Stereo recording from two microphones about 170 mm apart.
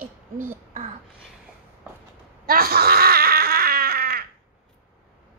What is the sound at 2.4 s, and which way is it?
Baby cry, 65° right (ahead or behind).